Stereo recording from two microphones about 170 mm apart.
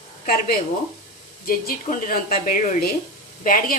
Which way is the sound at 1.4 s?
60° left (ahead or behind).